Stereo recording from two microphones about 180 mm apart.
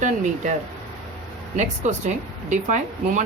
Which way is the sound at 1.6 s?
40° right (ahead or behind).